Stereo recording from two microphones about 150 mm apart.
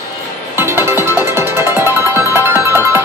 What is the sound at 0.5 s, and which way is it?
Music, 15° right (ahead or behind).